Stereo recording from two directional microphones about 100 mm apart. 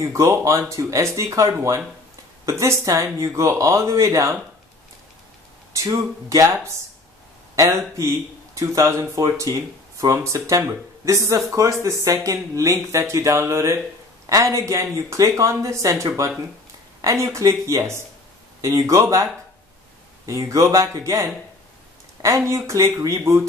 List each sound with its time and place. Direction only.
0.0 s speech: 30° right (ahead or behind)
5.7 s speech: 30° right (ahead or behind)
20.2 s speech: 30° right (ahead or behind)